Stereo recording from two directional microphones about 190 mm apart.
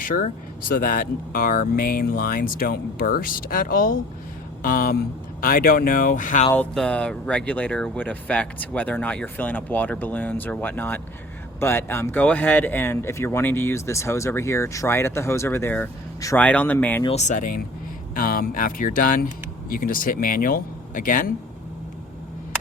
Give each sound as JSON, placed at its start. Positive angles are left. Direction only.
{"t": 0.0, "sound": "speech", "side_deg": 45}
{"t": 6.5, "sound": "speech", "side_deg": 5}
{"t": 17.0, "sound": "speech", "side_deg": 35}